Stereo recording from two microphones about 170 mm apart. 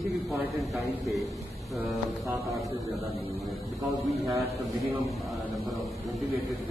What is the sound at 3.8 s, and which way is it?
Speech, 20° right (ahead or behind).